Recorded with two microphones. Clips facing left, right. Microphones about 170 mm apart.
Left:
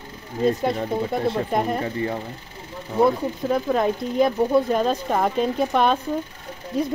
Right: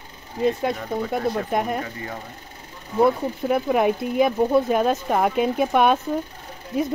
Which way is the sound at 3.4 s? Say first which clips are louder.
Right 2 dB; 10° right (ahead or behind).